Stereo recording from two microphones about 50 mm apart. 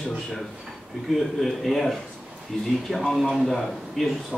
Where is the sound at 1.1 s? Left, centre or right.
Centre.